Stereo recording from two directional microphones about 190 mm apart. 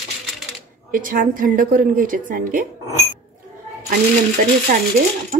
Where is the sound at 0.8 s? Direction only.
45° right (ahead or behind).